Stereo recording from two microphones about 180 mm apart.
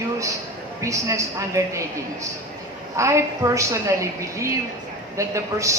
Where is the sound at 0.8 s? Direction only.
15° right (ahead or behind).